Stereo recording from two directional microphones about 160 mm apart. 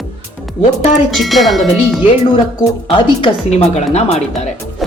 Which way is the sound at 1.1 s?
Centre (ahead or behind).